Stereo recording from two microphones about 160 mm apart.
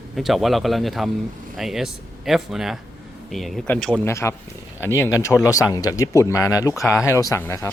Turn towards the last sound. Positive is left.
turn(degrees=15)  # may be behind; listen again after turning